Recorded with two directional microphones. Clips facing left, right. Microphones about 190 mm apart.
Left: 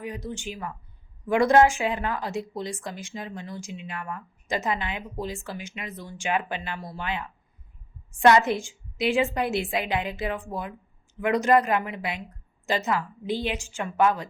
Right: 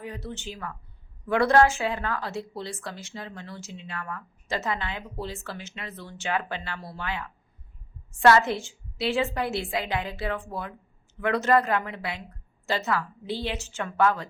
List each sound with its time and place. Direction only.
0.0 s a woman's voice: 15° left (ahead or behind)